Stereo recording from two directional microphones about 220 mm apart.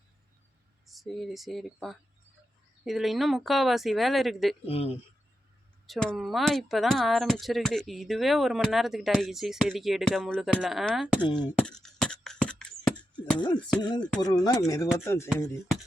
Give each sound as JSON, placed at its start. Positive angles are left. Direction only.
{"t": 0.9, "sound": "speech", "side_deg": 0}
{"t": 4.6, "sound": "speech", "side_deg": 25}
{"t": 5.8, "sound": "speech", "side_deg": 0}
{"t": 11.2, "sound": "speech", "side_deg": 20}
{"t": 11.5, "sound": "beatboxing", "side_deg": 5}
{"t": 14.2, "sound": "speech", "side_deg": 20}